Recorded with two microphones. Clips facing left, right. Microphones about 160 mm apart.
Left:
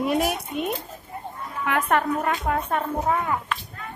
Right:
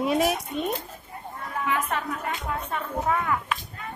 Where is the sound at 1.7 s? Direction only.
65° left (ahead or behind).